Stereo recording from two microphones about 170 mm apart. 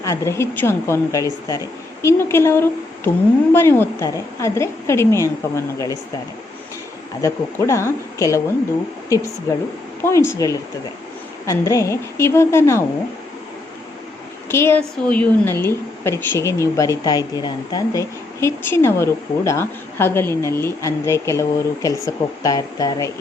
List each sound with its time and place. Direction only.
0.0 s a woman's voice: 15° left (ahead or behind)
7.2 s a woman's voice: 15° left (ahead or behind)
9.5 s a woman's voice: 15° left (ahead or behind)
14.5 s a woman's voice: 15° left (ahead or behind)